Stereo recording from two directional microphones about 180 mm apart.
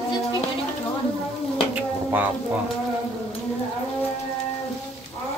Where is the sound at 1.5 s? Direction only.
10° right (ahead or behind).